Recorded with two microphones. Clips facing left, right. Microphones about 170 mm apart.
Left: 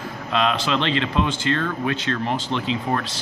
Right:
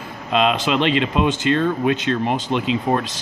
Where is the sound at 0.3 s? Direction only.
15° right (ahead or behind).